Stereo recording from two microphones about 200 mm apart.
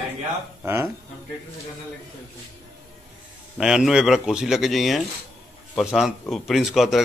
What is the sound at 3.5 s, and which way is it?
A man's voice, 5° right (ahead or behind).